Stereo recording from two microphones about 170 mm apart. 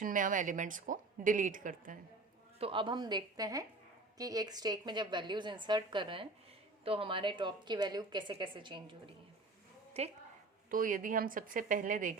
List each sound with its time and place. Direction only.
0.0 s a woman's voice: 50° right (ahead or behind)
2.6 s a woman's voice: 30° right (ahead or behind)
10.0 s a woman's voice: 40° right (ahead or behind)
10.7 s a woman's voice: 50° right (ahead or behind)